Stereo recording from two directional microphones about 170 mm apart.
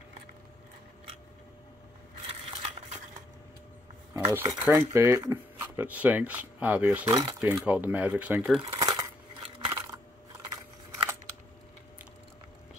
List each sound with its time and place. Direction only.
2.2 s a sound: 35° right (ahead or behind)
4.1 s speech: 20° right (ahead or behind)
8.7 s scissors: 25° right (ahead or behind)